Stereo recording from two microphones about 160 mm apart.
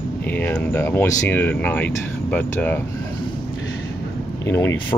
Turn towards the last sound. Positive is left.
turn(degrees=15)  # may be behind; listen again after turning